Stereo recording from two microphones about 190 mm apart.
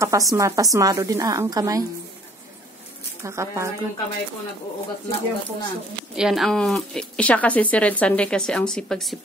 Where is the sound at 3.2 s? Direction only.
15° right (ahead or behind).